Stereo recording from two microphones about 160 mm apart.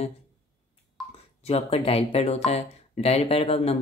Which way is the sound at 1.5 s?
40° left (ahead or behind).